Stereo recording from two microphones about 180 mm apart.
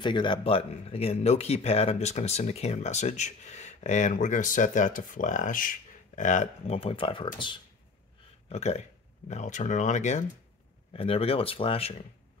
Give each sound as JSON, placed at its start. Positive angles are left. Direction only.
{"t": 0.0, "sound": "speech", "side_deg": 25}
{"t": 8.5, "sound": "speech", "side_deg": 35}